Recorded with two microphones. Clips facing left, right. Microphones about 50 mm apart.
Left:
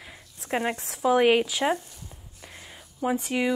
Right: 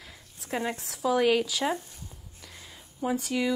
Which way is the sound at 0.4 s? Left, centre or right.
Left.